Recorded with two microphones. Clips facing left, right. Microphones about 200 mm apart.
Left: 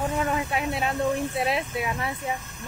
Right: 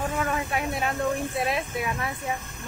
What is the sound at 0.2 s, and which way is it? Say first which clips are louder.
Speech: left 1 dB; 25° left (ahead or behind).